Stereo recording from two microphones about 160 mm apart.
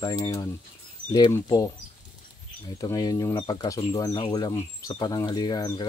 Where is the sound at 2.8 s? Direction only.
25° left (ahead or behind).